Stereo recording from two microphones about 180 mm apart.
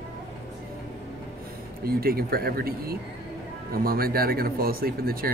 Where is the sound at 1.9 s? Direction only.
55° right (ahead or behind).